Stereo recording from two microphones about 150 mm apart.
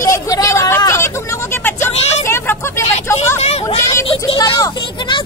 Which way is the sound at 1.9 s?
45° left (ahead or behind).